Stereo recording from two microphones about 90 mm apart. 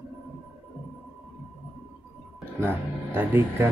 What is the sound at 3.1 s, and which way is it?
Speech, 25° right (ahead or behind).